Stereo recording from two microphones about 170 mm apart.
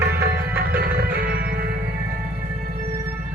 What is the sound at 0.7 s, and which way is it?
Music, 65° right (ahead or behind).